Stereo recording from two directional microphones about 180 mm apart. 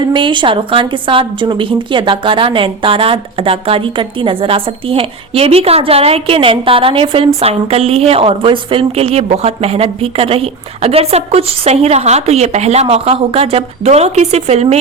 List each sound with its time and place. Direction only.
0.1 s a woman's voice: 25° right (ahead or behind)